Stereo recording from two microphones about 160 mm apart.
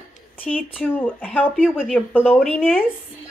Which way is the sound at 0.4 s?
10° left (ahead or behind).